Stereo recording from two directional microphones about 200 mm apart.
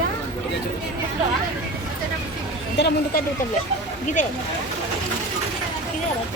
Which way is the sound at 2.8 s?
55° left (ahead or behind).